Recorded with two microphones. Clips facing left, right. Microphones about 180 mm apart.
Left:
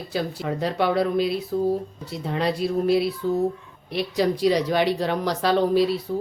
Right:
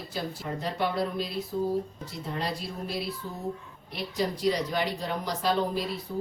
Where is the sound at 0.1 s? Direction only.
80° left.